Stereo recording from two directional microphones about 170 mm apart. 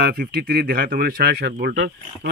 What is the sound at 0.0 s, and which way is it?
Speech, 65° right (ahead or behind).